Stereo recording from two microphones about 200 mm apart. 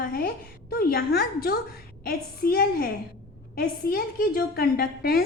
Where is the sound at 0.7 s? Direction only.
45° left (ahead or behind).